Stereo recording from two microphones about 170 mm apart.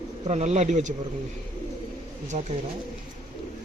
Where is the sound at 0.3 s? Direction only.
40° right (ahead or behind).